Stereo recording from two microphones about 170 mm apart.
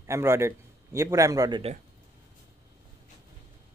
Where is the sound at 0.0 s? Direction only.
15° right (ahead or behind).